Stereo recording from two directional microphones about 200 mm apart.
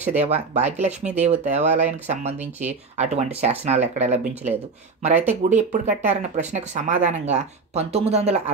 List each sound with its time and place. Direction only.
0.1 s speech: 35° right (ahead or behind)
5.3 s speech: 35° right (ahead or behind)